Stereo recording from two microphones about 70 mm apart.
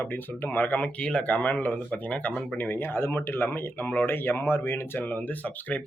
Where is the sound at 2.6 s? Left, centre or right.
Left.